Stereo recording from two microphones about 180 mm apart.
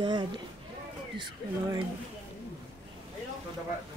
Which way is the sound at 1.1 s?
25° right (ahead or behind).